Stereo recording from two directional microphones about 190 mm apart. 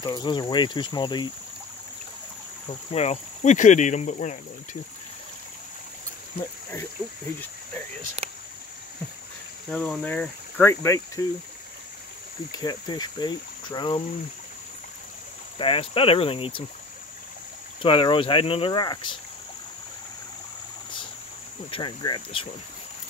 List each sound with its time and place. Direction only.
0.0 s speech: 25° left (ahead or behind)
2.9 s speech: 35° left (ahead or behind)
8.2 s speech: 35° right (ahead or behind)
9.7 s speech: 5° left (ahead or behind)
12.4 s speech: 20° left (ahead or behind)
15.5 s speech: 25° left (ahead or behind)
17.8 s speech: 25° left (ahead or behind)
21.6 s speech: 25° left (ahead or behind)